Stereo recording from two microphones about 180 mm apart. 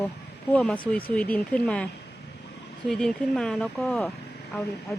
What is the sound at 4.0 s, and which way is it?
Vehicle, 5° left (ahead or behind).